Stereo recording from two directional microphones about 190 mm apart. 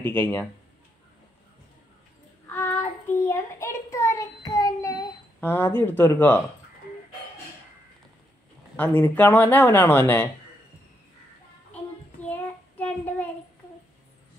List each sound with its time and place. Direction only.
0.0 s speech: 10° left (ahead or behind)
2.5 s child singing: 10° left (ahead or behind)
8.7 s speech: 10° left (ahead or behind)
12.2 s child singing: 10° left (ahead or behind)